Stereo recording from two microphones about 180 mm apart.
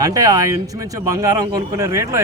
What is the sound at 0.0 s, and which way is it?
Speech, 20° right (ahead or behind).